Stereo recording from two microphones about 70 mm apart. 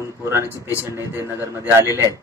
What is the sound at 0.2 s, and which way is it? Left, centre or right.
Speech, right.